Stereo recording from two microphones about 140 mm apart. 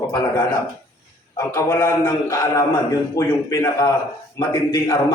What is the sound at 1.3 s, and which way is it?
A man's voice, 20° left (ahead or behind).